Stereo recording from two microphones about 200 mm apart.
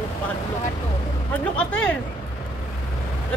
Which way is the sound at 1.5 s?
5° left (ahead or behind).